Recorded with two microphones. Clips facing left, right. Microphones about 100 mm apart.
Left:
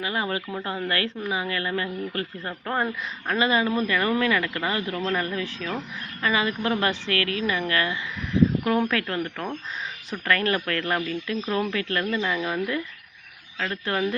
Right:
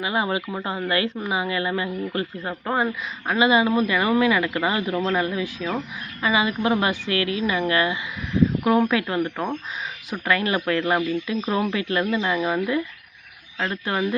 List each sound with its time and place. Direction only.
0.0 s speech: 20° right (ahead or behind)